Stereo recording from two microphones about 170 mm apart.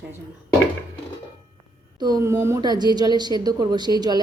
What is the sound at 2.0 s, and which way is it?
A woman's voice, 20° right (ahead or behind).